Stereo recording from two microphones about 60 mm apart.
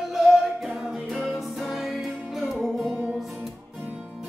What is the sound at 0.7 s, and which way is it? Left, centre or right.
Music, centre.